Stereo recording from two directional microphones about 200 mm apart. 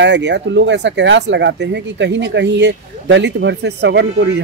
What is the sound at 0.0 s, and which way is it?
Speech, 60° right (ahead or behind).